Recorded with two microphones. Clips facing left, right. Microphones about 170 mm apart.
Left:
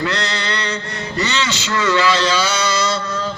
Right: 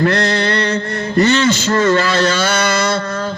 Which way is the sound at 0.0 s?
50° right (ahead or behind).